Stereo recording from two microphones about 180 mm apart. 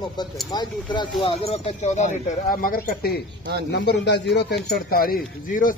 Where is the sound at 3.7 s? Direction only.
70° left (ahead or behind); by 5.7 s 50° left (ahead or behind).